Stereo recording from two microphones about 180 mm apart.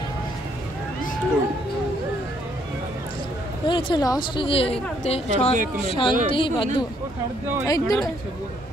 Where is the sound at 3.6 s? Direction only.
25° left (ahead or behind).